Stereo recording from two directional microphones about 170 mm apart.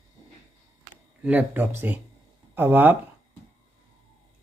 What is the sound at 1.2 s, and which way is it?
Speech, 10° right (ahead or behind).